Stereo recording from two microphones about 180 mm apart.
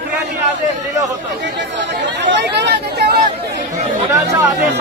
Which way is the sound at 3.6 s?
45° right (ahead or behind).